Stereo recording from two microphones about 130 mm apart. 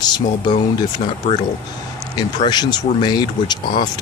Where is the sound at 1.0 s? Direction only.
55° left (ahead or behind).